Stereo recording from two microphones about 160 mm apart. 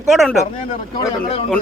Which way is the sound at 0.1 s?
Centre (ahead or behind).